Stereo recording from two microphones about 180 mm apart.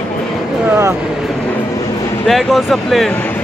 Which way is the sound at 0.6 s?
15° right (ahead or behind).